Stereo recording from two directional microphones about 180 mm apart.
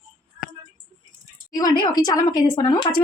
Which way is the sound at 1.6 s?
20° left (ahead or behind).